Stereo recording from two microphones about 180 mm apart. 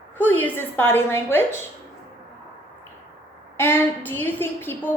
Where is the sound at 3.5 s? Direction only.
10° left (ahead or behind).